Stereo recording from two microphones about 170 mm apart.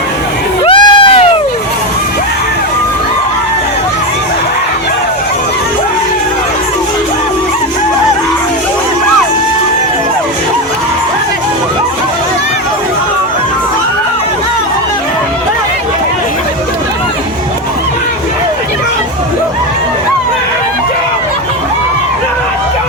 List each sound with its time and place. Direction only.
0.6 s crowd: 30° left (ahead or behind)